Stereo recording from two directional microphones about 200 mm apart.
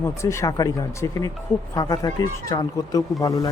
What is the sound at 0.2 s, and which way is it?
Speech, 15° left (ahead or behind).